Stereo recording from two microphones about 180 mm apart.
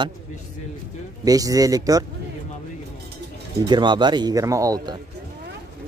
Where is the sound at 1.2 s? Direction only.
20° right (ahead or behind).